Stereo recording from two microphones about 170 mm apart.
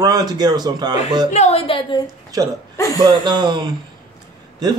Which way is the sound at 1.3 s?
40° left (ahead or behind).